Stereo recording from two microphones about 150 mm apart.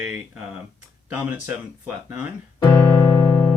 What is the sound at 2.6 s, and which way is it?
Keyboard, 20° left (ahead or behind).